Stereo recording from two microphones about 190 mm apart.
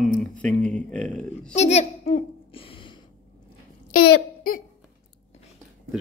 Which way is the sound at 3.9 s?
50° left (ahead or behind).